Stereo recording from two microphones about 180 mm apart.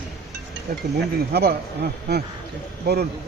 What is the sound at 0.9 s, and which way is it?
Speech, 65° right (ahead or behind).